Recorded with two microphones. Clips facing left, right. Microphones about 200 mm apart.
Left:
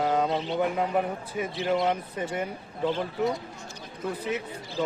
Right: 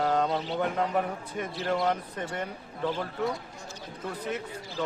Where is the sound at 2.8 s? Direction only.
20° left (ahead or behind).